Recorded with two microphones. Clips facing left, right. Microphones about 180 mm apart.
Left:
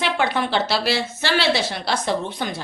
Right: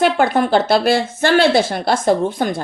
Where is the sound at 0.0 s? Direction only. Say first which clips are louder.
Right 7 dB; 45° right (ahead or behind).